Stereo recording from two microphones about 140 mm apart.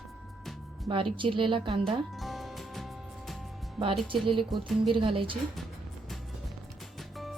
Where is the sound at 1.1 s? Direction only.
35° right (ahead or behind).